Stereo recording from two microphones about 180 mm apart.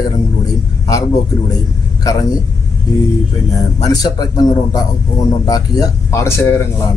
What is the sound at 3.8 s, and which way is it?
A man's voice, 20° left (ahead or behind).